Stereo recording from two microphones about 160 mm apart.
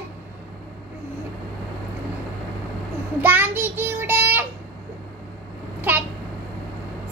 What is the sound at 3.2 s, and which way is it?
Child singing, 10° right (ahead or behind).